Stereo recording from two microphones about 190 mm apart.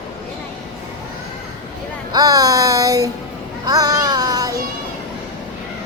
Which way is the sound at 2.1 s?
20° right (ahead or behind).